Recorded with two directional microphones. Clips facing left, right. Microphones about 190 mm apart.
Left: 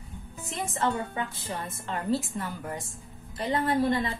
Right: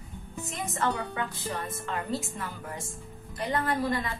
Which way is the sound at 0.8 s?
25° left (ahead or behind).